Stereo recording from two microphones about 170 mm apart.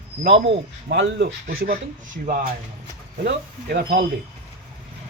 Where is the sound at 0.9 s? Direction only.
85° right; by 1.8 s 60° right (ahead or behind).